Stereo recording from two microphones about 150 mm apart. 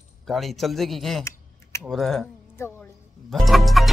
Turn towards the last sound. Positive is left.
turn(degrees=0)  # may be behind; listen again after turning